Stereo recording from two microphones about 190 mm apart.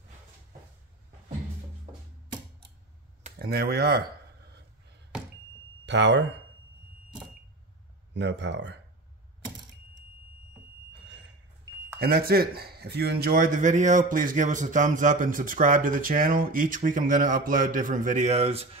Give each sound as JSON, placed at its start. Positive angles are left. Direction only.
{"t": 3.3, "sound": "speech", "side_deg": -55}
{"t": 5.9, "sound": "speech", "side_deg": -70}
{"t": 8.1, "sound": "speech", "side_deg": -65}
{"t": 11.1, "sound": "smoke detector", "side_deg": -70}
{"t": 12.0, "sound": "speech", "side_deg": -55}